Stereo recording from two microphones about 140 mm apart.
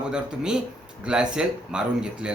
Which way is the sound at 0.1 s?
5° right (ahead or behind).